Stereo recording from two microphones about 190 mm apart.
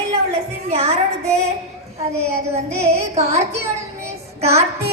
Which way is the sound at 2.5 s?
35° right (ahead or behind).